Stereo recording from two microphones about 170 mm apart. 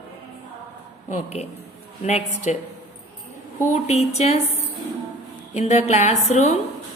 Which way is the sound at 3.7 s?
40° left (ahead or behind).